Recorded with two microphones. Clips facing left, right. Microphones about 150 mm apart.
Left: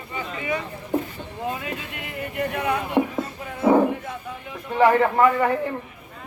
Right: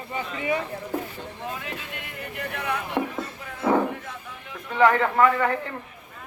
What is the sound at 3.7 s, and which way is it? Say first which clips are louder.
Bow-wow: left 4 dB; 15° left (ahead or behind).